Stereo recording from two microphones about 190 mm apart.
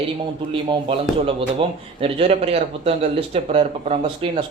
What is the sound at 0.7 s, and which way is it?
Speech, 30° right (ahead or behind).